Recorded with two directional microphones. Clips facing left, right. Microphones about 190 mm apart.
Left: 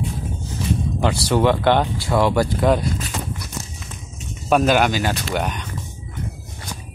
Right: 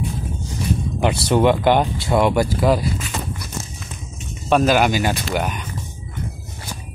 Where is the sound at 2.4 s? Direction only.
5° right (ahead or behind).